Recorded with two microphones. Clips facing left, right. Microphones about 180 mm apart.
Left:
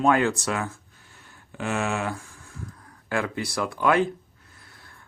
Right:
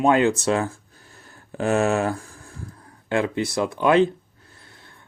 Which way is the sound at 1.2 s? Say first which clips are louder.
Right 7 dB; 40° right (ahead or behind).